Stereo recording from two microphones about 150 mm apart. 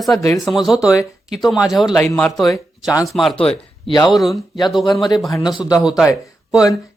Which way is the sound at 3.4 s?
40° left (ahead or behind).